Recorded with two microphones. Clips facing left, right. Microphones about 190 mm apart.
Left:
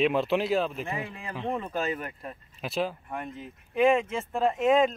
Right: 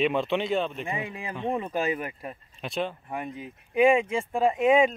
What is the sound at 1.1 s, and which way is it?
Speech, 10° right (ahead or behind).